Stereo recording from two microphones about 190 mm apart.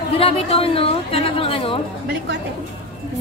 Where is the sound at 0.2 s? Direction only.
30° left (ahead or behind).